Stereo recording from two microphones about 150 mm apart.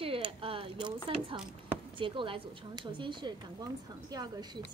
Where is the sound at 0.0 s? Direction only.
40° right (ahead or behind).